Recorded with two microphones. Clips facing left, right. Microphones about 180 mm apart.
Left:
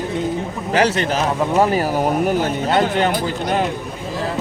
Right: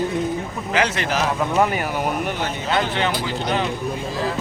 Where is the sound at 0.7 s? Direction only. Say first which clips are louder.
Left 4 dB; 35° left (ahead or behind).